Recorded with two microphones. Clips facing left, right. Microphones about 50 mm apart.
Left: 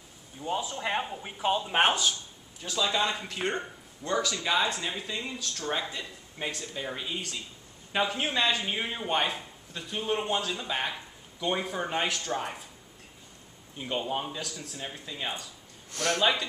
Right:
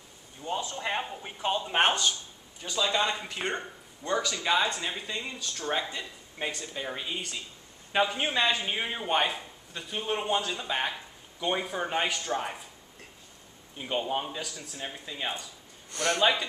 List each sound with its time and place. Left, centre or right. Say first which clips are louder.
0.4 s a man's voice: left 1 dB; centre
13.7 s a man's voice: right 1 dB; centre